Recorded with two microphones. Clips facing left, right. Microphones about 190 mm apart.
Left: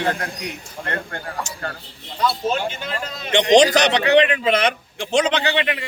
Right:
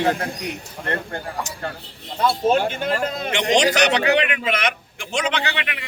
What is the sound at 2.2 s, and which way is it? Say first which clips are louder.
A man's voice: right 3 dB; 50° right (ahead or behind).